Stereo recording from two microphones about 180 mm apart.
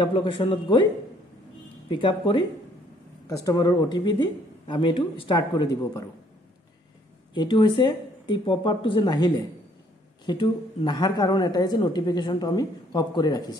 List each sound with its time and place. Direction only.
0.0 s a woman's voice: 25° left (ahead or behind)
1.9 s a woman's voice: 25° left (ahead or behind)
7.3 s a woman's voice: 25° left (ahead or behind)